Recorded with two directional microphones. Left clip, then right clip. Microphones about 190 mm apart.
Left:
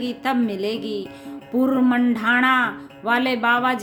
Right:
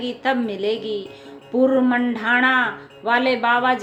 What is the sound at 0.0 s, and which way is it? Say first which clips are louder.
Speech: right 1 dB; 30° left (ahead or behind).